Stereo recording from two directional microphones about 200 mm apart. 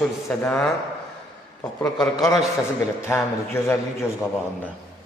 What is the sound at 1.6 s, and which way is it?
A man's voice, 20° left (ahead or behind).